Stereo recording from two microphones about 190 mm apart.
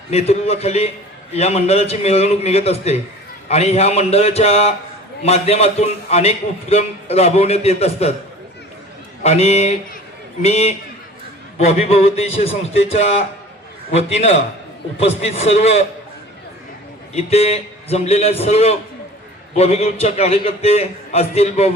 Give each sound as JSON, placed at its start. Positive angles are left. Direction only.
{"t": 0.1, "sound": "a man's voice", "side_deg": 35}
{"t": 9.2, "sound": "a man's voice", "side_deg": 35}
{"t": 17.2, "sound": "a man's voice", "side_deg": 30}